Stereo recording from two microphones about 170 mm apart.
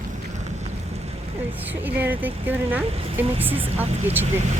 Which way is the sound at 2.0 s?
10° right (ahead or behind).